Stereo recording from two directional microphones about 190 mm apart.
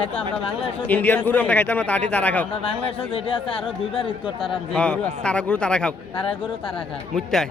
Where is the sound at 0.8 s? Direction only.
10° left (ahead or behind).